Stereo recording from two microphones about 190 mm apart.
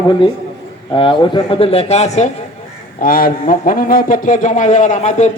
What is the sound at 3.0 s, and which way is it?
A man's voice, 50° left (ahead or behind).